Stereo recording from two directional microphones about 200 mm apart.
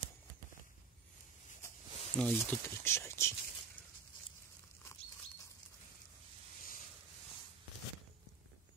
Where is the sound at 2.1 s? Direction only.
10° left (ahead or behind).